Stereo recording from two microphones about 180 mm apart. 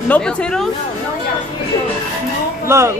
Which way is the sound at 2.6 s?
15° right (ahead or behind).